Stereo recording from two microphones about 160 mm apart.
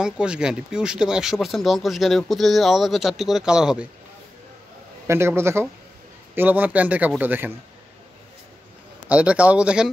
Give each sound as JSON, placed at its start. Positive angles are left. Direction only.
{"t": 0.0, "sound": "speech", "side_deg": -5}
{"t": 5.0, "sound": "speech", "side_deg": -15}
{"t": 9.1, "sound": "speech", "side_deg": -10}